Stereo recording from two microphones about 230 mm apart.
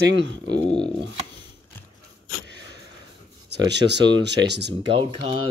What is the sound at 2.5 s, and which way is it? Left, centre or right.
Sniff, right.